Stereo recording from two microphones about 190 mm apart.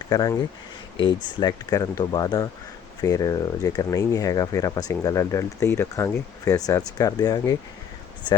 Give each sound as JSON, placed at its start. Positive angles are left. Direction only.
{"t": 0.1, "sound": "speech", "side_deg": 20}